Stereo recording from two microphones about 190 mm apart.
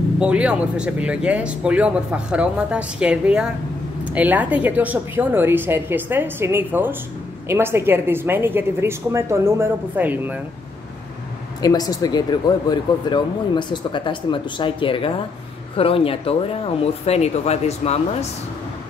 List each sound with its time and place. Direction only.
0.2 s a woman's voice: 5° right (ahead or behind)
11.6 s speech: 20° left (ahead or behind)